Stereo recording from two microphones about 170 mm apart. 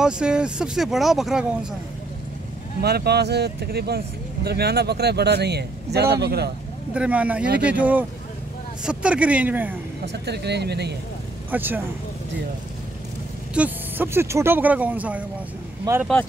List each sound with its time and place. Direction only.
0.0 s speech: 5° right (ahead or behind)
2.8 s speech: 70° right (ahead or behind)
6.9 s speech: 10° right (ahead or behind)
10.0 s speech: 75° right (ahead or behind)
11.5 s speech: 10° right (ahead or behind)
13.6 s speech: 10° right (ahead or behind)
15.9 s speech: 20° right (ahead or behind)